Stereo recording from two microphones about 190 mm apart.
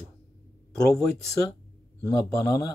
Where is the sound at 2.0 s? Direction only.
15° left (ahead or behind).